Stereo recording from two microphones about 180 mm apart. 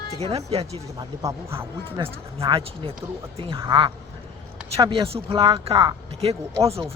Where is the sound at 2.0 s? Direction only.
30° right (ahead or behind).